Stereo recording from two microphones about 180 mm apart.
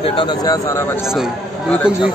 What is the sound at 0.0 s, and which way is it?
Speech, 25° left (ahead or behind).